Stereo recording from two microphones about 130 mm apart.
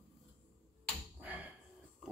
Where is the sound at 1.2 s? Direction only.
10° right (ahead or behind).